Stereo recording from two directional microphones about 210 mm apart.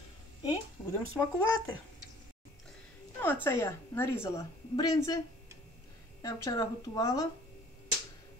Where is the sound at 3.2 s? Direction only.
10° left (ahead or behind).